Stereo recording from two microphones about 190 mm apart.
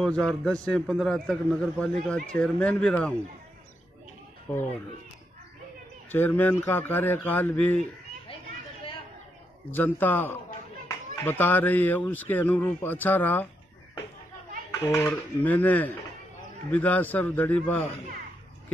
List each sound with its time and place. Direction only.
0.0 s a man's voice: 5° left (ahead or behind)
6.1 s speech: 10° left (ahead or behind)
9.7 s speech: 10° left (ahead or behind)
14.9 s speech: 15° left (ahead or behind)